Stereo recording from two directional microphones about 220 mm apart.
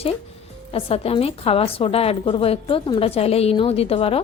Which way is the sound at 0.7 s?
25° left (ahead or behind).